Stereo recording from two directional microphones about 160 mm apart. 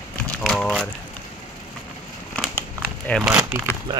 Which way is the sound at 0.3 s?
5° left (ahead or behind).